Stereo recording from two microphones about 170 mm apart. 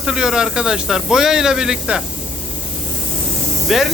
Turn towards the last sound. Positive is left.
turn(degrees=0)  # may be behind; listen again after turning